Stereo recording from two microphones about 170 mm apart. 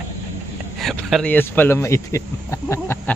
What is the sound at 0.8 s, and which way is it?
Speech, centre (ahead or behind).